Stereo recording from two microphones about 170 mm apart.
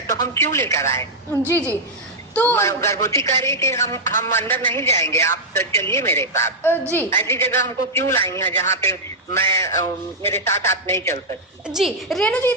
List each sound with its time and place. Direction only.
0.1 s a woman's voice: 20° left (ahead or behind)
11.6 s a woman's voice: centre (ahead or behind)